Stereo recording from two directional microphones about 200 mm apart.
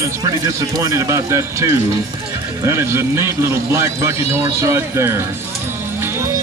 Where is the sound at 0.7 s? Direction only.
15° right (ahead or behind).